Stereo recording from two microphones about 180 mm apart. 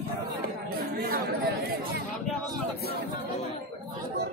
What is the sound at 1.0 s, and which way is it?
Chatter, 55° right (ahead or behind).